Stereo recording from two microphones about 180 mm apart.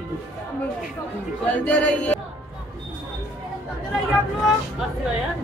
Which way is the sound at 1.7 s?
5° left (ahead or behind).